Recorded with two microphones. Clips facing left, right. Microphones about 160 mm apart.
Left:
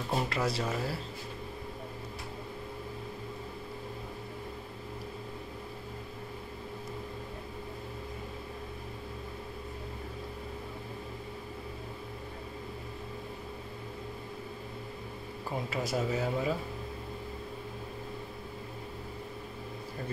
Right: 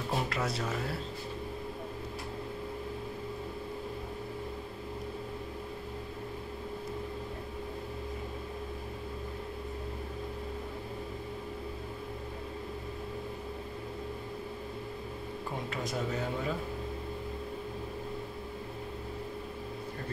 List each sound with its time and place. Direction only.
0.1 s speech: centre (ahead or behind)
15.7 s speech: 5° left (ahead or behind)